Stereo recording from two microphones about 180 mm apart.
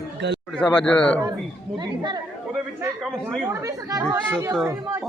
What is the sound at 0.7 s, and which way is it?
Speech, 5° left (ahead or behind).